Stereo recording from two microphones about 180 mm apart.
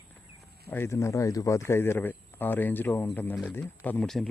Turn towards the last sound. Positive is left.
turn(degrees=5)  # may be behind; listen again after turning